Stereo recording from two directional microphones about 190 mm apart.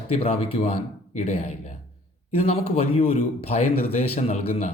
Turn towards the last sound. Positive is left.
turn(degrees=35)  # may be behind; listen again after turning